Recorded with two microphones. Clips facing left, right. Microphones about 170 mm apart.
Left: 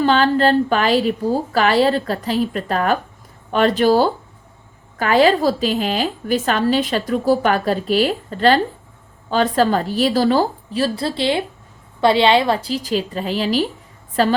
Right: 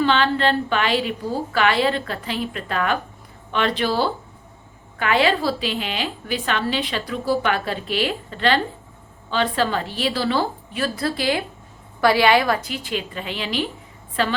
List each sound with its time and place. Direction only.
0.0 s a woman's voice: 40° left (ahead or behind)